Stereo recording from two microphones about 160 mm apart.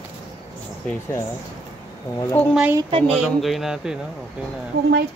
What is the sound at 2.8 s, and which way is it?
Speech, 30° right (ahead or behind).